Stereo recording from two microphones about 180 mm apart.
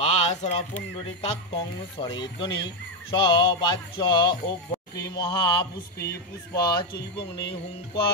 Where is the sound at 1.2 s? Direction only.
30° left (ahead or behind).